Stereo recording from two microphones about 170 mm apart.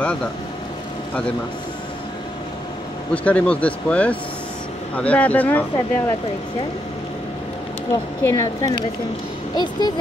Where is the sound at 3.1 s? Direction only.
10° left (ahead or behind).